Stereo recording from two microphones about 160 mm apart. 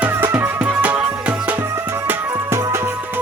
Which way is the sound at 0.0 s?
15° right (ahead or behind).